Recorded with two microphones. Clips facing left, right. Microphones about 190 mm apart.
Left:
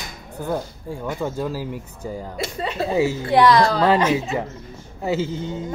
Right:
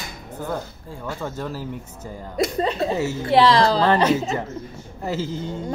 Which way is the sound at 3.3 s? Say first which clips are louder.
Right 1 dB; 25° right (ahead or behind).